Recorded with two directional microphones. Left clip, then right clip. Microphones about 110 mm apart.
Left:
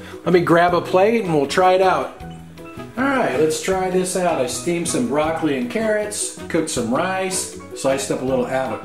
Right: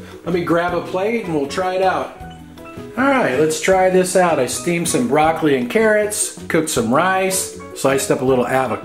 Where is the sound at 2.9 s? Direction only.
35° right (ahead or behind).